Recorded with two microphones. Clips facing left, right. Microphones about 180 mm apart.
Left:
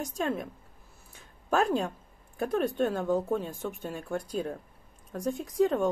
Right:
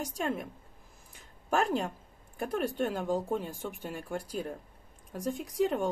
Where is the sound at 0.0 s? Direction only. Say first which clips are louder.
Left 2 dB; 10° right (ahead or behind).